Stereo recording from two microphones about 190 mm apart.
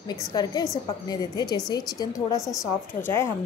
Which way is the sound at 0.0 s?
20° left (ahead or behind).